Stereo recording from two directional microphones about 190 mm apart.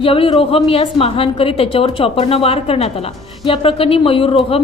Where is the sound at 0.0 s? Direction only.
30° left (ahead or behind).